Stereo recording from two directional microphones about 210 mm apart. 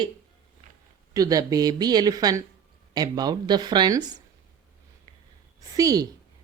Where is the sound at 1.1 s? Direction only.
15° right (ahead or behind).